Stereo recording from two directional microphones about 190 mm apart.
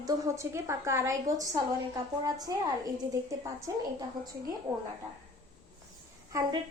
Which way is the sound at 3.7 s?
20° right (ahead or behind).